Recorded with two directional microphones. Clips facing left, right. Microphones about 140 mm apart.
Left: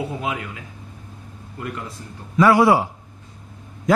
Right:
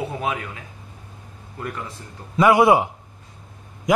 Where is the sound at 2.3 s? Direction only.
20° right (ahead or behind).